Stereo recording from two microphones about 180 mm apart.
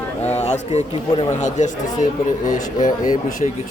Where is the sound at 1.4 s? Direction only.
45° left (ahead or behind).